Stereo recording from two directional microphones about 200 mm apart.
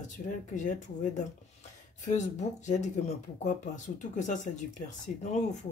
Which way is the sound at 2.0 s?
35° left (ahead or behind).